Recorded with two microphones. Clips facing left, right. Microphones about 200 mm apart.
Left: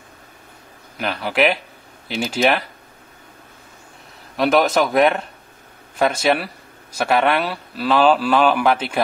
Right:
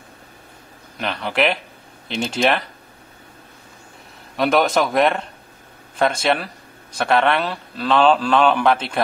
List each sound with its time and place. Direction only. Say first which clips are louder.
0.9 s a man's voice: left 1 dB; 5° left (ahead or behind)
4.4 s a man's voice: left 1 dB; centre (ahead or behind)